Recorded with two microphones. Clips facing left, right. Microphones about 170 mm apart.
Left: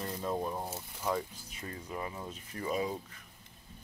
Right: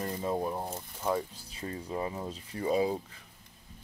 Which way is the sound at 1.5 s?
25° right (ahead or behind).